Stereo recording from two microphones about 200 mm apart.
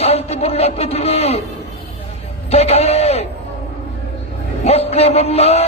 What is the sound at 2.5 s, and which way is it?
Speech, 30° left (ahead or behind).